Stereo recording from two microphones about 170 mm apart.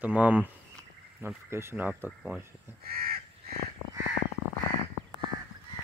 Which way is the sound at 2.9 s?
60° right (ahead or behind).